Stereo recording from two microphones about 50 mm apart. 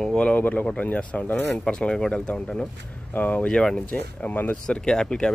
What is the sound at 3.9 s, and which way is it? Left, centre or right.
Speech, left.